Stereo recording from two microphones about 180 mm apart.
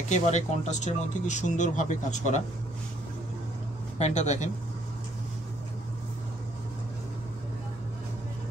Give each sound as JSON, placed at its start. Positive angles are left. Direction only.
{"t": 0.1, "sound": "speech", "side_deg": 40}
{"t": 4.0, "sound": "speech", "side_deg": 40}